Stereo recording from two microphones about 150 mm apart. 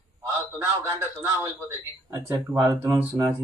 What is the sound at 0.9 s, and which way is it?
Speech, 20° right (ahead or behind).